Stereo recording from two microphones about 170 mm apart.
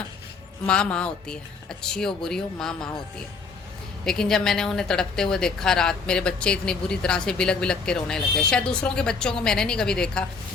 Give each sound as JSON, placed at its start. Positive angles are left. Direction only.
{"t": 0.6, "sound": "a woman's voice", "side_deg": 5}
{"t": 4.0, "sound": "a woman's voice", "side_deg": 5}